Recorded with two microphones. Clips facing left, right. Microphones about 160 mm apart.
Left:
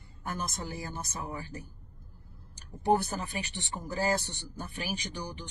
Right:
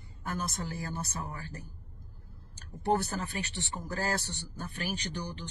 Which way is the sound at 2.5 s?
15° left (ahead or behind).